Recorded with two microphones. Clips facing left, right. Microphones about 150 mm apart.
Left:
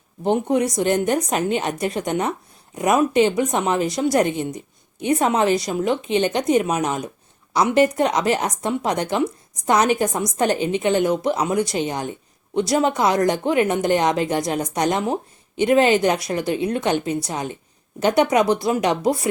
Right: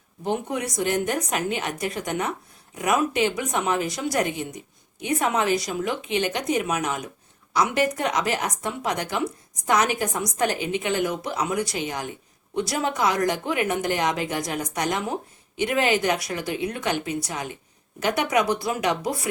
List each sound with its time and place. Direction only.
0.3 s a woman's voice: 25° left (ahead or behind)